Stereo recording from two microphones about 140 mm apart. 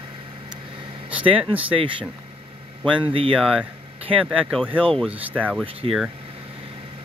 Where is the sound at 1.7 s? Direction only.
40° right (ahead or behind).